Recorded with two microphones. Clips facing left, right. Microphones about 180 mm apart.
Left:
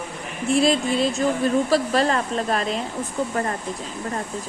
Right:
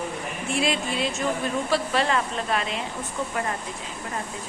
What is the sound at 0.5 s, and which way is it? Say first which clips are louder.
A woman's voice: left 7 dB; 40° left (ahead or behind).